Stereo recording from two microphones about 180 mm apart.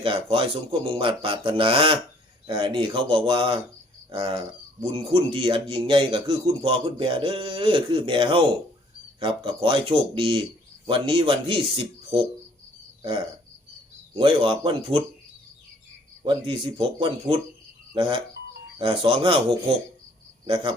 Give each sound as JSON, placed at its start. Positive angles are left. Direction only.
{"t": 0.0, "sound": "speech", "side_deg": -30}
{"t": 13.0, "sound": "speech", "side_deg": -25}
{"t": 16.2, "sound": "speech", "side_deg": -25}